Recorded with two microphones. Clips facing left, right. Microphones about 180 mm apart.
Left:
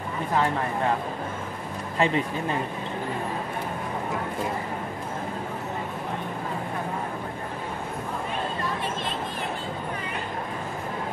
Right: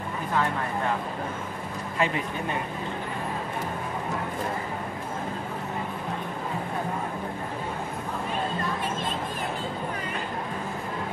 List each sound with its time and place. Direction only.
2.0 s speech: 30° left (ahead or behind)